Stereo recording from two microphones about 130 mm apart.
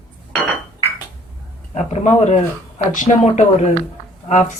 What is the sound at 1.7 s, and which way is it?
Speech, 60° left (ahead or behind).